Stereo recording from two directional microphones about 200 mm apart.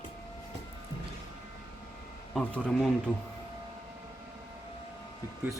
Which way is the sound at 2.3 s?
Centre (ahead or behind).